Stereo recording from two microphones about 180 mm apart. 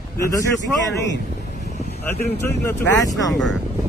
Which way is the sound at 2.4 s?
10° left (ahead or behind).